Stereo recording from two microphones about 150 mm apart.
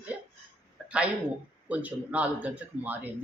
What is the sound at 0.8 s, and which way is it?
Speech, 10° right (ahead or behind).